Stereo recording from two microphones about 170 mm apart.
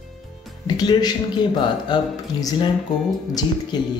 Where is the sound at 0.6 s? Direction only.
25° left (ahead or behind).